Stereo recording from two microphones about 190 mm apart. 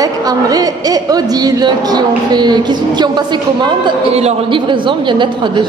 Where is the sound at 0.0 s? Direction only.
20° right (ahead or behind).